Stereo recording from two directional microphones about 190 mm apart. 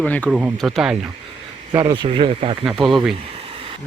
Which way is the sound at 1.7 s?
25° right (ahead or behind).